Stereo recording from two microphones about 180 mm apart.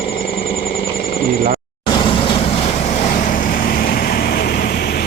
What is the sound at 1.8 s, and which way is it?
Vehicle, 25° left (ahead or behind).